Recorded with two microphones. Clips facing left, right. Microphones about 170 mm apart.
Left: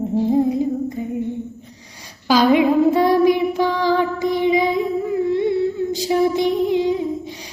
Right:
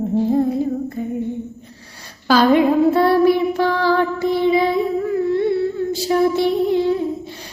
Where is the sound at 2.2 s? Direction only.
15° left (ahead or behind).